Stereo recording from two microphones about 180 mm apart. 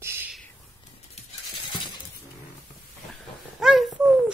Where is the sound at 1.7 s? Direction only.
25° left (ahead or behind).